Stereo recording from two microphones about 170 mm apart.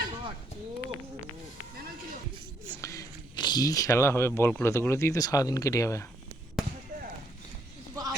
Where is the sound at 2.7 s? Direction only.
20° left (ahead or behind).